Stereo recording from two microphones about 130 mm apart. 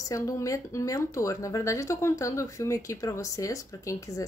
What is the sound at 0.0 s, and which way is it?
Speech, 25° left (ahead or behind).